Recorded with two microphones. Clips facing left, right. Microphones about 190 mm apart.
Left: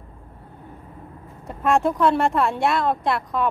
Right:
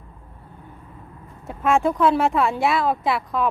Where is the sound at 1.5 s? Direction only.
Centre (ahead or behind).